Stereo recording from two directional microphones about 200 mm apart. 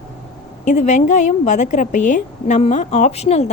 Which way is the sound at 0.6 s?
35° left (ahead or behind).